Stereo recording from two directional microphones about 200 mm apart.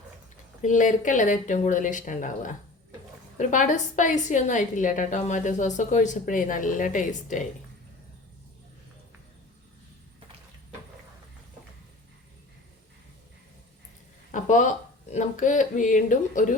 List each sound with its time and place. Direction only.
0.6 s a woman's voice: 40° left (ahead or behind)
14.3 s a sound: 40° left (ahead or behind)
15.1 s a woman's voice: 35° left (ahead or behind)